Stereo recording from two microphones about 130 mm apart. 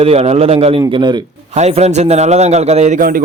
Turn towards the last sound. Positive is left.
turn(degrees=-60)  # may be behind; listen again after turning